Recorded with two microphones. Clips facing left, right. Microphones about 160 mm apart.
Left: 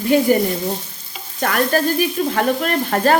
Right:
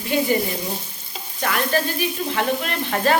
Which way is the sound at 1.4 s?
45° left (ahead or behind).